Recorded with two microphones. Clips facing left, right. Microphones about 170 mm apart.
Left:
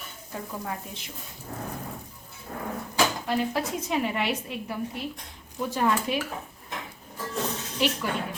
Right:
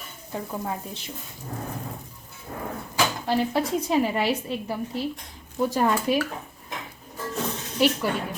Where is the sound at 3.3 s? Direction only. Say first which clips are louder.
Right 4 dB; 30° right (ahead or behind).